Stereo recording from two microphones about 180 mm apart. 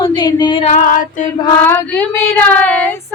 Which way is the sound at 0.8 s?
50° left (ahead or behind).